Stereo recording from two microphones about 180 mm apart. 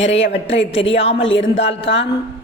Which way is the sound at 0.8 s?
30° left (ahead or behind).